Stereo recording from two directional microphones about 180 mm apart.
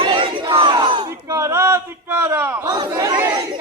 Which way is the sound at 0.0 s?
30° right (ahead or behind).